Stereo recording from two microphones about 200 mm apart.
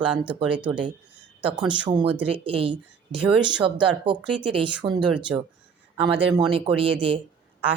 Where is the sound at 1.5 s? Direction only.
20° right (ahead or behind).